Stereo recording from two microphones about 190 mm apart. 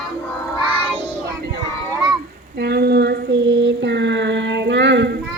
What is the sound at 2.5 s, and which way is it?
Child singing, 60° right (ahead or behind).